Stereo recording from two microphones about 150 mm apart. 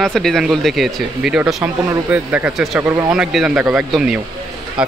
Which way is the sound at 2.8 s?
20° right (ahead or behind).